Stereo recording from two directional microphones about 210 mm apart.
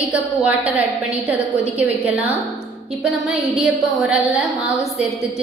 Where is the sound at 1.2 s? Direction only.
30° left (ahead or behind).